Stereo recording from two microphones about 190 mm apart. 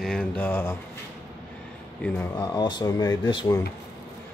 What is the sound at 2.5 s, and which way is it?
Speech, 25° left (ahead or behind).